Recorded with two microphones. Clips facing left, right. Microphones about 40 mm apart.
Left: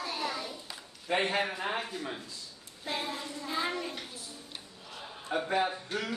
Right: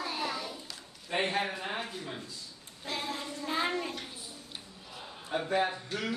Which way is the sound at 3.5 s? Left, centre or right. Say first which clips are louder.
Right 2 dB; centre.